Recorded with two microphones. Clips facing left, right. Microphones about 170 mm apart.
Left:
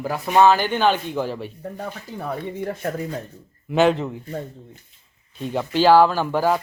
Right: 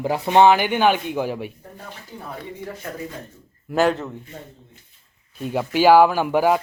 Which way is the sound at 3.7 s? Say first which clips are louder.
Left 2 dB; centre (ahead or behind).